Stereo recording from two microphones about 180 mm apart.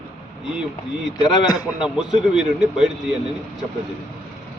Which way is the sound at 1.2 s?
20° left (ahead or behind).